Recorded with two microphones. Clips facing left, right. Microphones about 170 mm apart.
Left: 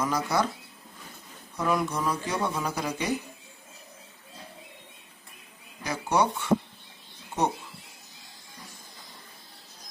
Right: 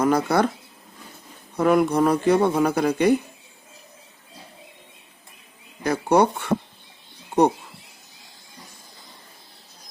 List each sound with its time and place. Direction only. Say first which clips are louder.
0.0 s speech: right 7 dB; 60° right (ahead or behind)
1.5 s speech: right 9 dB; 60° right (ahead or behind)
5.8 s speech: right 7 dB; 55° right (ahead or behind)